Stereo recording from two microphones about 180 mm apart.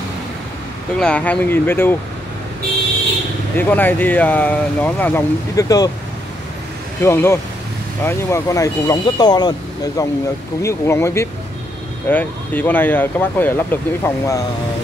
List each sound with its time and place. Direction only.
0.9 s speech: 5° left (ahead or behind)
3.5 s speech: 10° left (ahead or behind)
7.0 s speech: 15° left (ahead or behind)